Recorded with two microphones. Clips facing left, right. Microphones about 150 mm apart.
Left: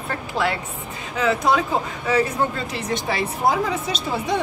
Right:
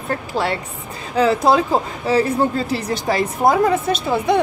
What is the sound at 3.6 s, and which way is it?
Speech, 55° right (ahead or behind).